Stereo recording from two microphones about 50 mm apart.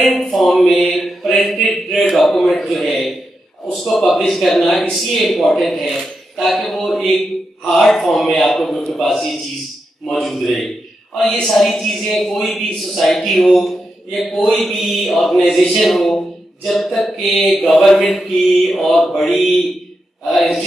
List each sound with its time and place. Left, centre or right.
0.0 s a man's voice: centre
0.9 s mantra: centre
2.0 s a man's voice: centre
19.2 s mantra: left
20.2 s a sound: centre